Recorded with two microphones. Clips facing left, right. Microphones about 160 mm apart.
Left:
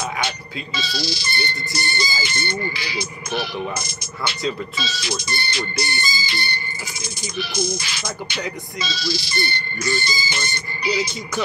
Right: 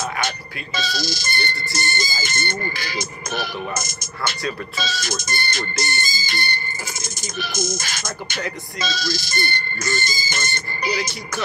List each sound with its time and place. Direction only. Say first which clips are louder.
0.7 s speech: right 2 dB; 45° right (ahead or behind)